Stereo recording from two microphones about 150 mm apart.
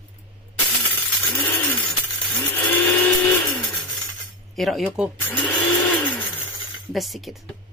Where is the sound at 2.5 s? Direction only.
10° left (ahead or behind).